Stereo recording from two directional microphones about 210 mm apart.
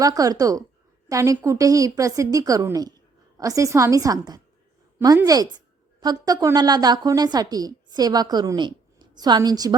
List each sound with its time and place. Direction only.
0.0 s a woman's voice: 15° right (ahead or behind)